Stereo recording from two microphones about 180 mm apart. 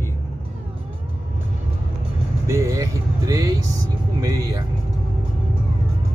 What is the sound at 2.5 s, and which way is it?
Speech, 20° right (ahead or behind).